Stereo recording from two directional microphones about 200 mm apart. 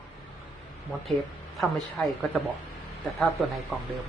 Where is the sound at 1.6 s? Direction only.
Centre (ahead or behind).